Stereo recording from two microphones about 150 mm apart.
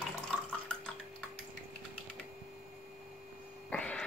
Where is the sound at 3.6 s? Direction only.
5° left (ahead or behind).